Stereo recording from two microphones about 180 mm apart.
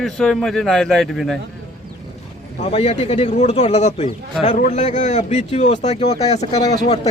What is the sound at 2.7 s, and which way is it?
Speech, 35° left (ahead or behind).